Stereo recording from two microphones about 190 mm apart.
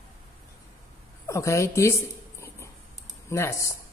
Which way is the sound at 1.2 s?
15° left (ahead or behind).